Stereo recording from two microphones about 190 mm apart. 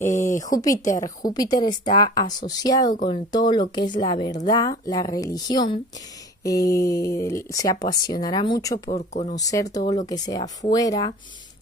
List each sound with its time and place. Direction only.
0.0 s speech: 40° left (ahead or behind)
0.4 s a woman's voice: 20° left (ahead or behind)
8.9 s speech: 35° left (ahead or behind)
9.3 s a woman's voice: 20° left (ahead or behind)